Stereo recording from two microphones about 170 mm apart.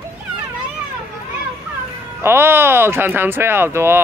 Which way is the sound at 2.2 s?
15° right (ahead or behind).